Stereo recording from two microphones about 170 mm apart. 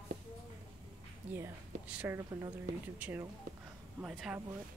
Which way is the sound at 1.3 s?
10° right (ahead or behind).